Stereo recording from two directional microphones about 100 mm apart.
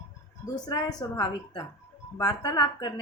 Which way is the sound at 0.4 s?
40° left (ahead or behind).